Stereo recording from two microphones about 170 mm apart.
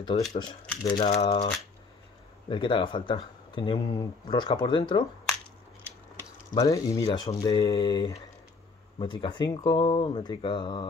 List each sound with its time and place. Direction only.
0.4 s speech: 25° left (ahead or behind)
2.5 s speech: 30° left (ahead or behind)
6.5 s speech: 20° left (ahead or behind)